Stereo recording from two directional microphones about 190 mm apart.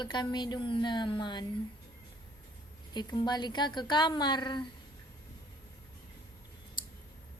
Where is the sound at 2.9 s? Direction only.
25° left (ahead or behind).